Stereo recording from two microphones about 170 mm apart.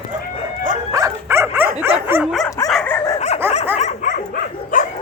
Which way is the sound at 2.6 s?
Centre (ahead or behind).